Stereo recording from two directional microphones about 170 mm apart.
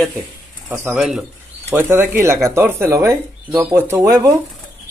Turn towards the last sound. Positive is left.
turn(degrees=-15)  # may be behind; listen again after turning